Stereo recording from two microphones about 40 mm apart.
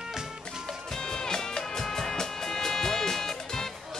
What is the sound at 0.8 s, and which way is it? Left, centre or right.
Music, centre.